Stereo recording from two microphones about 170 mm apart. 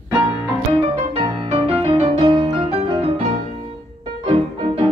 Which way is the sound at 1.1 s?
35° right (ahead or behind).